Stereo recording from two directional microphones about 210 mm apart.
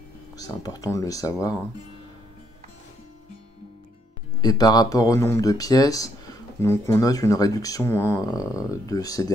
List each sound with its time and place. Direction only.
0.4 s speech: 15° left (ahead or behind)
4.4 s speech: 20° left (ahead or behind)